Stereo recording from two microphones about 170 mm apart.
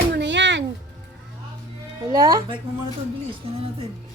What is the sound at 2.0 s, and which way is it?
Speech, 20° right (ahead or behind).